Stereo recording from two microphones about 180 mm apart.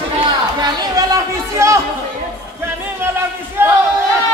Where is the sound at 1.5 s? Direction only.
15° right (ahead or behind).